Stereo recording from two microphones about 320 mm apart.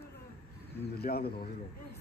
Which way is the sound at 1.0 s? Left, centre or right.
Left.